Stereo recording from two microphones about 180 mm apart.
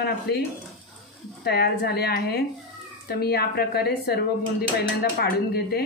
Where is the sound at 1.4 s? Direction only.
60° left (ahead or behind).